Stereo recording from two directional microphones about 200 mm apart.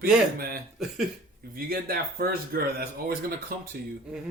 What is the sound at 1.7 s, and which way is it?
A man's voice, 50° right (ahead or behind).